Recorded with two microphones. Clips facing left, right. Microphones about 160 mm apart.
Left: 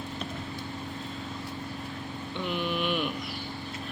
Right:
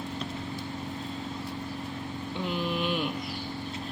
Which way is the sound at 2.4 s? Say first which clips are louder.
Even; 30° right (ahead or behind).